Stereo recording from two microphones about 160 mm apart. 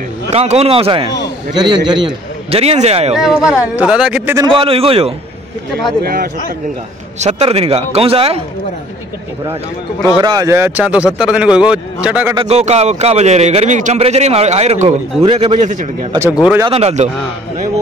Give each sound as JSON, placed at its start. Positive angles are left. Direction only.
{"t": 0.3, "sound": "a man's voice", "side_deg": -40}
{"t": 3.2, "sound": "speech", "side_deg": 0}
{"t": 4.4, "sound": "a man's voice", "side_deg": -35}
{"t": 6.0, "sound": "speech", "side_deg": -65}
{"t": 7.2, "sound": "a man's voice", "side_deg": -45}
{"t": 10.2, "sound": "a man's voice", "side_deg": -20}
{"t": 12.4, "sound": "a man's voice", "side_deg": -40}
{"t": 16.6, "sound": "a man's voice", "side_deg": -40}